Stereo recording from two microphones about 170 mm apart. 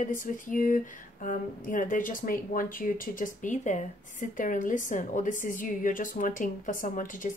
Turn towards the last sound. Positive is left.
turn(degrees=50)  # may be behind; listen again after turning